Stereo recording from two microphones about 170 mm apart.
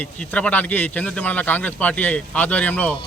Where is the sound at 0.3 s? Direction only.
10° left (ahead or behind).